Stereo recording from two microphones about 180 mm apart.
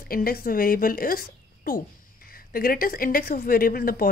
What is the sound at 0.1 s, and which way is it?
Speech, 55° left (ahead or behind).